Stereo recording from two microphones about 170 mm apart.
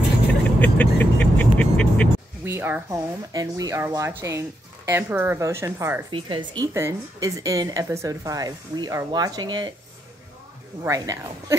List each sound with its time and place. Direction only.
0.6 s speech: 10° left (ahead or behind)
2.4 s speech: 15° right (ahead or behind)
6.0 s a woman's voice: 30° right (ahead or behind)
10.8 s a woman's voice: 20° right (ahead or behind)